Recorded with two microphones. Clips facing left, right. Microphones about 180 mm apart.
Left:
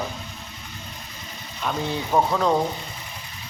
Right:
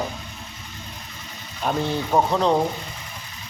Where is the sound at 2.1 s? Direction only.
15° right (ahead or behind).